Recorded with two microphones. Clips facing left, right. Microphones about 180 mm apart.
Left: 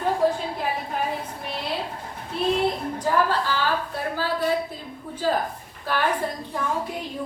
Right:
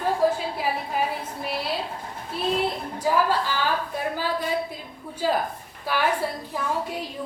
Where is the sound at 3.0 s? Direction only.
10° right (ahead or behind).